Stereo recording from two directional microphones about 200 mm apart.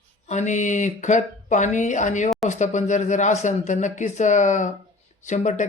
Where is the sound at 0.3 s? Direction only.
35° left (ahead or behind).